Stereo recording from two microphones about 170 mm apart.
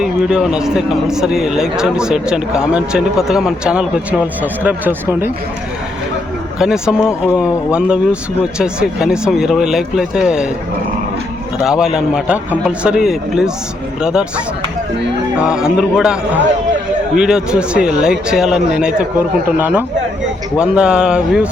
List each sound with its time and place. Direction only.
0.0 s a man's voice: 5° right (ahead or behind)
6.6 s a man's voice: 5° right (ahead or behind)
11.6 s a man's voice: 5° right (ahead or behind)
15.4 s a man's voice: 5° right (ahead or behind)